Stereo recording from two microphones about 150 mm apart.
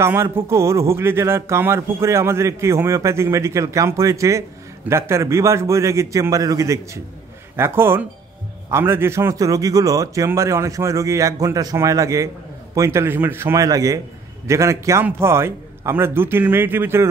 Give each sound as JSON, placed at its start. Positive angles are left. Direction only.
{"t": 0.0, "sound": "a man's voice", "side_deg": -15}